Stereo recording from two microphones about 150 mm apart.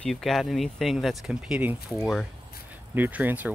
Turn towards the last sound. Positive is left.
turn(degrees=-10)  # may be behind; listen again after turning